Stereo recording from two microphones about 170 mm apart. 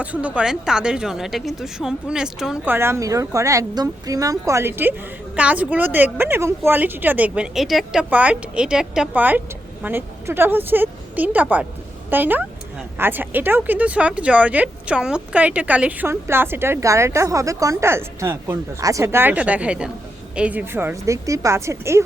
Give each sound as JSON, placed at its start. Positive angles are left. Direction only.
{"t": 0.0, "sound": "a woman's voice", "side_deg": -10}